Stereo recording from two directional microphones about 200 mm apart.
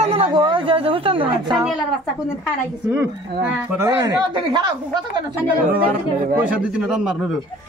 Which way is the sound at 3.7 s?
15° right (ahead or behind).